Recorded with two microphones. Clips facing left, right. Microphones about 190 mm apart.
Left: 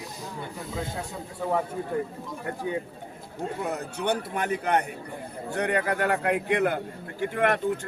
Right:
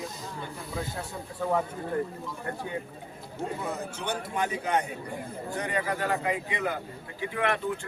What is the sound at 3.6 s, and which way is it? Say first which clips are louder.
A man's voice: left 5 dB; 65° left (ahead or behind).